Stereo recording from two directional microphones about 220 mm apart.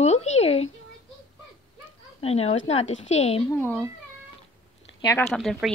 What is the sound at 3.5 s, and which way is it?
Speech, 10° left (ahead or behind).